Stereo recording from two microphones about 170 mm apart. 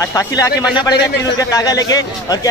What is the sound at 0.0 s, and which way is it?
A man's voice, 20° left (ahead or behind).